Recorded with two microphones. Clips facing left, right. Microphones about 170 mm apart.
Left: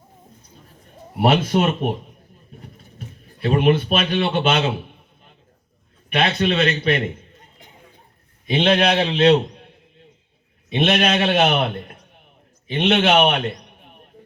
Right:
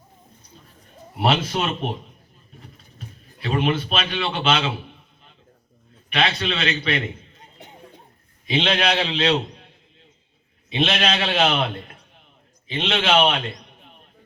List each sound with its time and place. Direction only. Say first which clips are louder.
1.2 s a man's voice: left 5 dB; 50° left (ahead or behind)
3.4 s a man's voice: left 5 dB; 55° left (ahead or behind)
8.4 s a man's voice: left 4 dB; 50° left (ahead or behind)
13.2 s a sound: left 3 dB; 55° left (ahead or behind)